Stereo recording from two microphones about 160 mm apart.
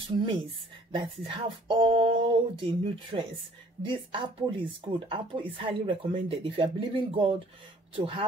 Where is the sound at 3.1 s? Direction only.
35° right (ahead or behind).